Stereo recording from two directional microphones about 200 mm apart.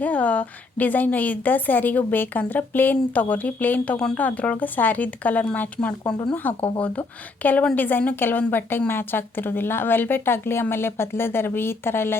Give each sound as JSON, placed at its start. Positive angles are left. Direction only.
{"t": 0.0, "sound": "a woman's voice", "side_deg": 5}